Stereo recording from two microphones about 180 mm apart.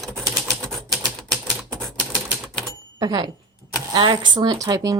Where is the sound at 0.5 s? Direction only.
Centre (ahead or behind).